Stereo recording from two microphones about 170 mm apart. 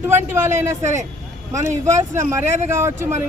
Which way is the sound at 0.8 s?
45° right (ahead or behind).